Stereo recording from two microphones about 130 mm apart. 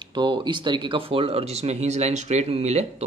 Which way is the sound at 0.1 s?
40° right (ahead or behind).